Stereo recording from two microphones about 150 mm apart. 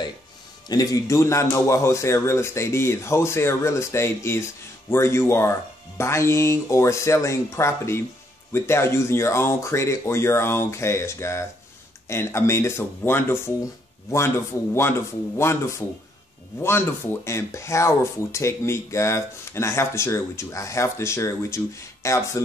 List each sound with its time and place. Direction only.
0.7 s a man's voice: 25° left (ahead or behind)